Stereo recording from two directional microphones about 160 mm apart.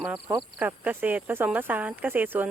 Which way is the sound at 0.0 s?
10° right (ahead or behind).